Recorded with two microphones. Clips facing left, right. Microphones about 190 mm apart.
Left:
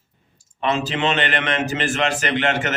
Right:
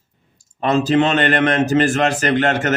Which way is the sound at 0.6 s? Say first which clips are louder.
Right 6 dB; 40° right (ahead or behind).